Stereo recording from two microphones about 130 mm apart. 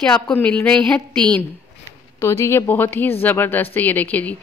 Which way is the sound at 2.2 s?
20° left (ahead or behind).